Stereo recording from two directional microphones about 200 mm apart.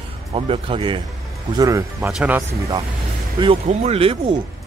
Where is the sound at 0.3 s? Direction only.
30° right (ahead or behind).